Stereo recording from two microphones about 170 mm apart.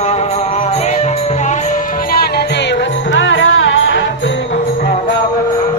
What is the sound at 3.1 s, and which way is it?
Music, 90° left.